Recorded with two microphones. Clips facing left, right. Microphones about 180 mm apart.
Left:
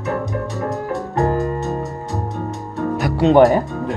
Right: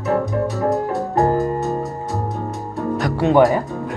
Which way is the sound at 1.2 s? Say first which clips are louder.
Right 1 dB; 25° right (ahead or behind).